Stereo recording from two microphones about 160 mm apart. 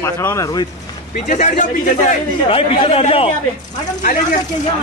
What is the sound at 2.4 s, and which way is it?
Speech, 35° left (ahead or behind).